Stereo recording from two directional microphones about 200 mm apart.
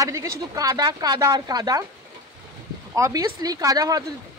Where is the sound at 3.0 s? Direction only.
15° right (ahead or behind).